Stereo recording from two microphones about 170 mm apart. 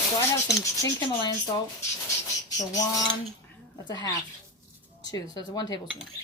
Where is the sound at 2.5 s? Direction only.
20° left (ahead or behind).